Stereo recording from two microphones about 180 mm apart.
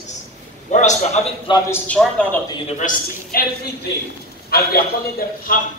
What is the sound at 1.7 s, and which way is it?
Speech, 5° left (ahead or behind).